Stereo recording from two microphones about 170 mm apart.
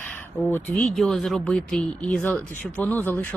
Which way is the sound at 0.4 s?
10° left (ahead or behind).